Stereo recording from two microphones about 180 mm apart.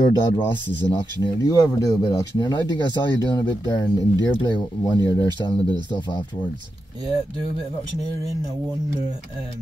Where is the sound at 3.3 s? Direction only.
25° left (ahead or behind).